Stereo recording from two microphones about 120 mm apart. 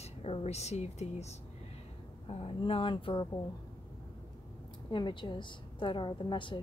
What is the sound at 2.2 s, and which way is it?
A woman's voice, 50° left (ahead or behind).